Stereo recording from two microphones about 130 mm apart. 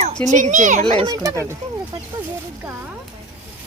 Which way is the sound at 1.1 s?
25° right (ahead or behind).